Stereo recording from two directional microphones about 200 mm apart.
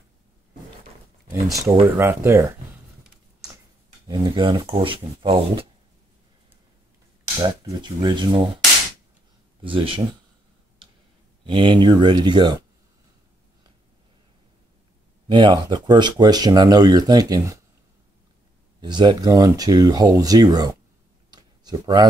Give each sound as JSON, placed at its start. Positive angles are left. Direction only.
{"t": 1.3, "sound": "speech", "side_deg": -15}
{"t": 4.1, "sound": "speech", "side_deg": -20}
{"t": 7.3, "sound": "speech", "side_deg": -20}
{"t": 9.6, "sound": "speech", "side_deg": -25}
{"t": 11.4, "sound": "speech", "side_deg": -25}
{"t": 15.2, "sound": "speech", "side_deg": -25}
{"t": 18.8, "sound": "speech", "side_deg": -20}
{"t": 21.3, "sound": "a sound", "side_deg": -20}